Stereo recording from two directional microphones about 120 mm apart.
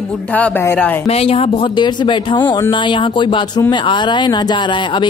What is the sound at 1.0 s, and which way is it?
Speech, 55° left (ahead or behind).